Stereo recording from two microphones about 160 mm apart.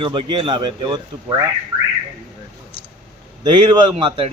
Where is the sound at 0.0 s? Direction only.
30° right (ahead or behind).